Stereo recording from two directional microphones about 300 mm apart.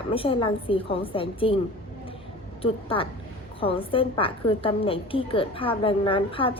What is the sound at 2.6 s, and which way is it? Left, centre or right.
A woman's voice, centre.